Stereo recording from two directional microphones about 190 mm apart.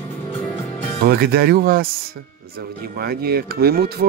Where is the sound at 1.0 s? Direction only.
55° right (ahead or behind).